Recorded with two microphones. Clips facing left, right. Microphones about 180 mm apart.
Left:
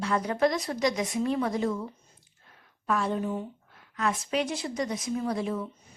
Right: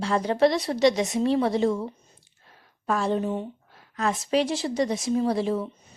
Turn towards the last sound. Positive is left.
turn(degrees=-30)  # may be behind; listen again after turning